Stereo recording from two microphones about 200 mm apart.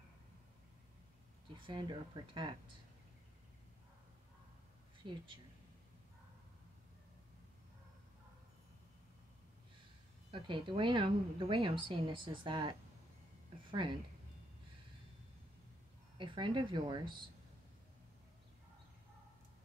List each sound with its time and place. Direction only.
1.5 s a woman's voice: 25° right (ahead or behind)
5.0 s a woman's voice: 25° right (ahead or behind)
10.3 s a woman's voice: 25° right (ahead or behind)
16.2 s a woman's voice: 25° right (ahead or behind)